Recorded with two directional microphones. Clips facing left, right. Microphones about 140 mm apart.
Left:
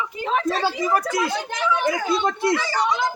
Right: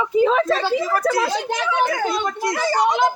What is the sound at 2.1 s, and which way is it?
Speech, 25° left (ahead or behind).